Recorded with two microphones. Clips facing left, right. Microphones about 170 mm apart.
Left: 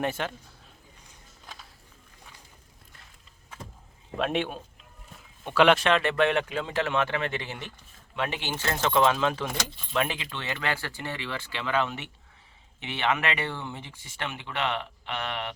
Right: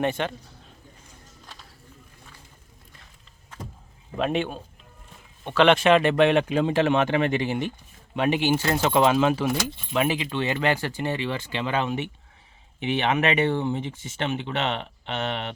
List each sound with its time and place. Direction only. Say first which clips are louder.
0.0 s a man's voice: right 4 dB; 5° left (ahead or behind)
4.2 s a man's voice: right 3 dB; centre (ahead or behind)
5.9 s speech: right 6 dB; 15° right (ahead or behind)
10.2 s speech: right 8 dB; 20° right (ahead or behind)